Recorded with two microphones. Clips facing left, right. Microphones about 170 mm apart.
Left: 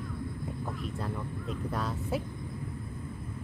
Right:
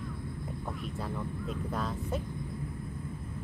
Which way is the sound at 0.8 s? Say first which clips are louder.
Right 1 dB; centre (ahead or behind).